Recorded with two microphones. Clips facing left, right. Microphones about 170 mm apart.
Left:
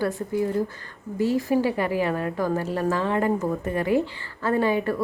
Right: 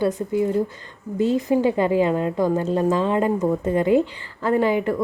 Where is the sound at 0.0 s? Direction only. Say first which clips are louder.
Right 4 dB; 20° right (ahead or behind).